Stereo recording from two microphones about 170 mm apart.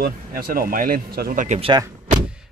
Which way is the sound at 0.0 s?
60° right (ahead or behind).